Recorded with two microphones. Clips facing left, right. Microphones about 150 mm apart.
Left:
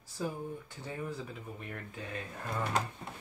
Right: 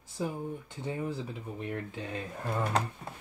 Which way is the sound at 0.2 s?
20° right (ahead or behind).